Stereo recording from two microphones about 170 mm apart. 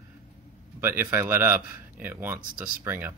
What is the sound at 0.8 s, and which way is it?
Speech, 10° right (ahead or behind).